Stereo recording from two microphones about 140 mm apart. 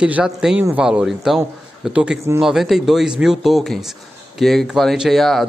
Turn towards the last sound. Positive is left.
turn(degrees=0)  # may be behind; listen again after turning